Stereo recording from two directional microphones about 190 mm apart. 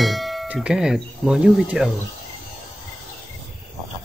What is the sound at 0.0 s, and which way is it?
Speech, centre (ahead or behind).